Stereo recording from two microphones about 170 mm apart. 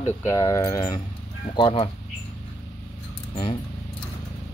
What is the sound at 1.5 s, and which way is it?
Speech, 30° left (ahead or behind).